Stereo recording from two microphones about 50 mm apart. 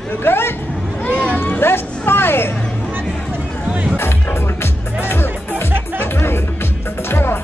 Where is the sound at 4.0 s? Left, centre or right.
Left.